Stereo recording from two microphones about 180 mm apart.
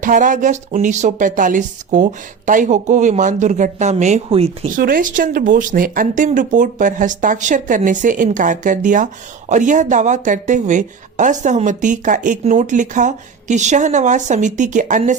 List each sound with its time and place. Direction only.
0.0 s speech: 45° right (ahead or behind)
4.8 s speech: 50° right (ahead or behind)